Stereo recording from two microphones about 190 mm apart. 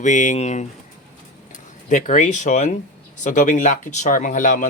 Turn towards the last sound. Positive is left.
turn(degrees=45)  # may be behind; listen again after turning